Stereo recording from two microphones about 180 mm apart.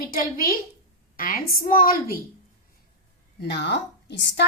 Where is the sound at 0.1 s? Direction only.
50° left (ahead or behind).